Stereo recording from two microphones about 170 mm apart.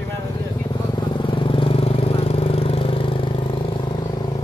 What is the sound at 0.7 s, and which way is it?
Vehicle, 25° left (ahead or behind).